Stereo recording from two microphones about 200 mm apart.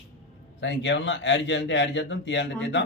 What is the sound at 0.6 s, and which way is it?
Speech, 65° left (ahead or behind).